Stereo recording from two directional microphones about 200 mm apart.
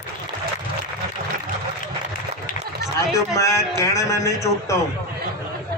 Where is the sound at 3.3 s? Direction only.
15° left (ahead or behind).